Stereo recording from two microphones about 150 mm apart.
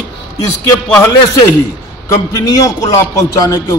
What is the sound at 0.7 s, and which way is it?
Speech, 10° left (ahead or behind).